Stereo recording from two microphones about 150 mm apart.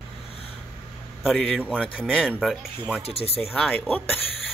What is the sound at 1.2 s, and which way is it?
Speech, centre (ahead or behind).